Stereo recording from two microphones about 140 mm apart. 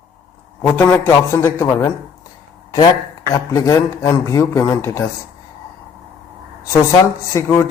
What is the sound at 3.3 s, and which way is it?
Speech, 25° left (ahead or behind).